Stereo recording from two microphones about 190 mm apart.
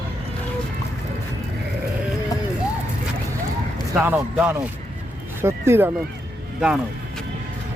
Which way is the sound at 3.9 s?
10° right (ahead or behind).